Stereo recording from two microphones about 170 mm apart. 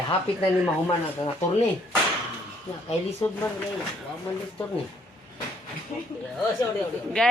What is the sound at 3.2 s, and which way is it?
Speech, 25° left (ahead or behind).